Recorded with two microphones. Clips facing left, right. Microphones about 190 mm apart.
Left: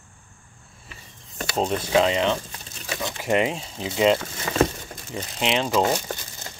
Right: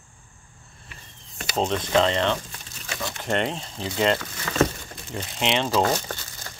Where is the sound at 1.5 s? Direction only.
5° left (ahead or behind).